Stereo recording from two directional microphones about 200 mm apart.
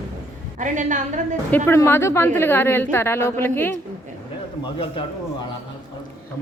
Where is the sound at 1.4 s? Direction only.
10° left (ahead or behind).